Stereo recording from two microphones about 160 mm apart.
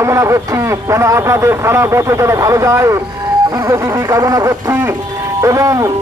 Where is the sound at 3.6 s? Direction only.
20° right (ahead or behind).